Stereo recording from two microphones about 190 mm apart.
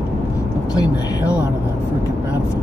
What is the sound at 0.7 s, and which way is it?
Speech, 20° left (ahead or behind).